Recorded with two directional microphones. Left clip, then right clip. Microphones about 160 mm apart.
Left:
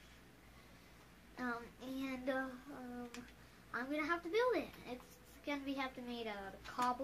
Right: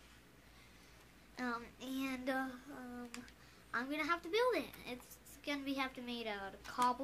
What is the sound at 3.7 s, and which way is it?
Child singing, 30° right (ahead or behind).